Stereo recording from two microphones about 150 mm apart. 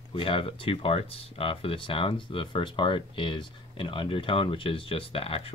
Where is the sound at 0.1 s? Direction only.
35° left (ahead or behind).